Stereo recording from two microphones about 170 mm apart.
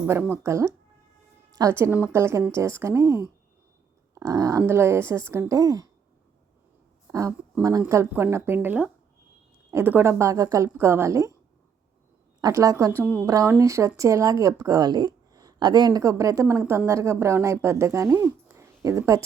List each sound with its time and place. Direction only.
0.0 s speech: 10° right (ahead or behind)
7.1 s speech: 20° right (ahead or behind)
12.4 s speech: 20° right (ahead or behind)